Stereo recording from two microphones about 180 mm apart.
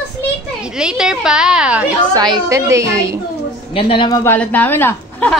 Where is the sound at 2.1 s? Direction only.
20° right (ahead or behind).